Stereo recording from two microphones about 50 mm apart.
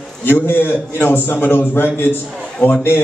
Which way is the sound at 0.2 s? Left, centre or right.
Left.